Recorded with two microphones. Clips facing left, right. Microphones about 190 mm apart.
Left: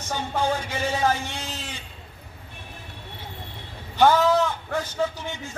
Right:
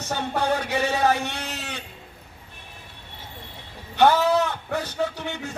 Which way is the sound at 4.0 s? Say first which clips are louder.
Even; 65° right (ahead or behind).